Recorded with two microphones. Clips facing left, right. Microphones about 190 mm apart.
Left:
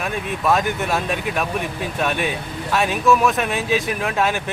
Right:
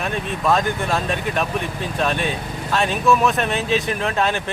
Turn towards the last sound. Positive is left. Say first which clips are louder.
# even
turn(degrees=5)  # may be behind; listen again after turning